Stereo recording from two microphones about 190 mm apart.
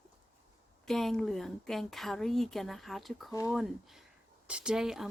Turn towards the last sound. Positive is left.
turn(degrees=-5)  # may be behind; listen again after turning